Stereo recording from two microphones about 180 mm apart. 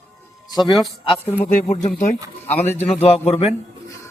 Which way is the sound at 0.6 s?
Centre (ahead or behind).